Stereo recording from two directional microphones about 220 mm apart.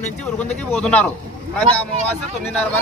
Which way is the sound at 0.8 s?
5° left (ahead or behind).